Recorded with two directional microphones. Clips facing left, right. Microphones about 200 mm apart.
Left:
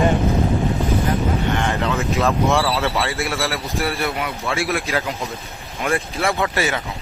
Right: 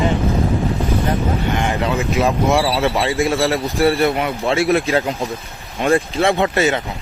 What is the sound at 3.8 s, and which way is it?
Speech, 30° right (ahead or behind).